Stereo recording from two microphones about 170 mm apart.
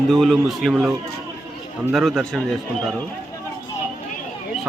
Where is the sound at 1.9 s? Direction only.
Centre (ahead or behind).